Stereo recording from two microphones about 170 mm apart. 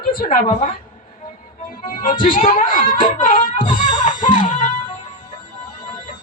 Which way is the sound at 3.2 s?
50° left (ahead or behind).